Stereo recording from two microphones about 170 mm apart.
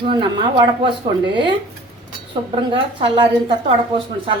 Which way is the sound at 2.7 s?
30° right (ahead or behind).